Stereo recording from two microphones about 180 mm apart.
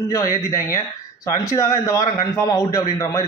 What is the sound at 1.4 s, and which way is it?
A man's voice, 20° left (ahead or behind).